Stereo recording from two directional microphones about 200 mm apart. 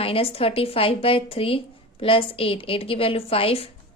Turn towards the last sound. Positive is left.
turn(degrees=30)  # may be behind; listen again after turning